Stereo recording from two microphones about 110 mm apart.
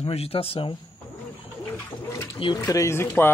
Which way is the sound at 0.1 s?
60° left (ahead or behind).